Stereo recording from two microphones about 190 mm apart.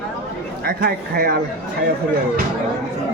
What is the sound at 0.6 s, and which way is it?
Speech, 50° right (ahead or behind).